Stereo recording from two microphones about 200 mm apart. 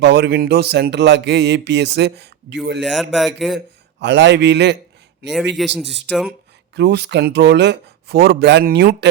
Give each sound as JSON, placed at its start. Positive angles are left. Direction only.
{"t": 0.0, "sound": "speech", "side_deg": -55}
{"t": 2.8, "sound": "speech", "side_deg": 0}
{"t": 4.0, "sound": "speech", "side_deg": -60}
{"t": 5.5, "sound": "speech", "side_deg": 0}
{"t": 6.7, "sound": "speech", "side_deg": -55}